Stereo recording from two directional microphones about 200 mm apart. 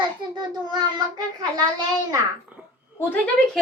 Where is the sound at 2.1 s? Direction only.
10° right (ahead or behind).